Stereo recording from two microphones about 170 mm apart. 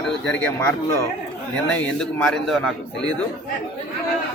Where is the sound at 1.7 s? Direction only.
5° left (ahead or behind).